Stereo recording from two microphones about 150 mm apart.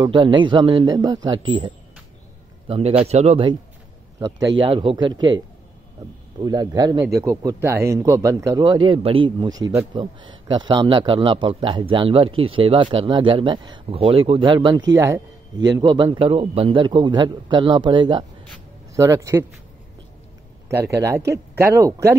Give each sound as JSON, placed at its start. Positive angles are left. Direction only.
{"t": 0.0, "sound": "a man's voice", "side_deg": -35}
{"t": 2.7, "sound": "a man's voice", "side_deg": -45}
{"t": 4.4, "sound": "a man's voice", "side_deg": -35}
{"t": 6.4, "sound": "a man's voice", "side_deg": -25}
{"t": 20.9, "sound": "speech", "side_deg": -20}